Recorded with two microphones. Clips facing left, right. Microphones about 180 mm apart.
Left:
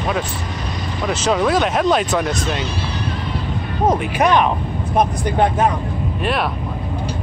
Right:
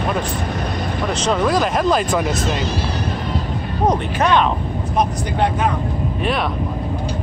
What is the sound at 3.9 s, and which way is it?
Speech, 15° left (ahead or behind).